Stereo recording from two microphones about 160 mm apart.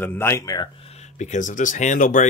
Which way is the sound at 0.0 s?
15° left (ahead or behind).